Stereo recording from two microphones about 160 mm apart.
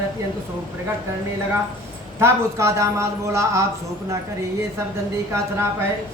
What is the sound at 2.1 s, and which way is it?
A man's voice, 15° right (ahead or behind).